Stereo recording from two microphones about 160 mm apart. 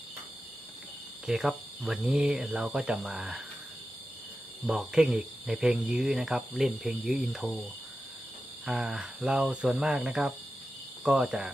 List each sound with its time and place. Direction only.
1.3 s speech: 5° right (ahead or behind)
4.6 s speech: 5° right (ahead or behind)
8.6 s speech: 5° right (ahead or behind)